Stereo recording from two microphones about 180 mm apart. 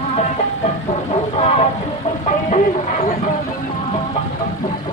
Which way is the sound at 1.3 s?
35° left (ahead or behind).